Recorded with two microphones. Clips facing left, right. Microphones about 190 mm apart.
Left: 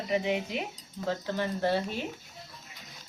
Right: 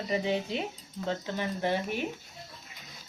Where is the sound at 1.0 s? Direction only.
15° right (ahead or behind).